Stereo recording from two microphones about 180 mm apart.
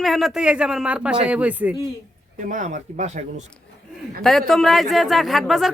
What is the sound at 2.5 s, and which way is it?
Speech, 45° right (ahead or behind).